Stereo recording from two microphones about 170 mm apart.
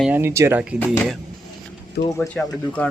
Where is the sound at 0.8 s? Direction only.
5° left (ahead or behind).